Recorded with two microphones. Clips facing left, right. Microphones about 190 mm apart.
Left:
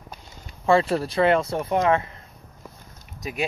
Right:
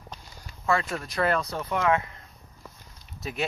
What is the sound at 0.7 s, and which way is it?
Speech, 30° left (ahead or behind).